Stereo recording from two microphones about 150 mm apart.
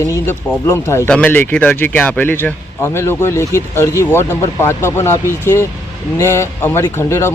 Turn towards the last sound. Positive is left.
turn(degrees=15)  # may be behind; listen again after turning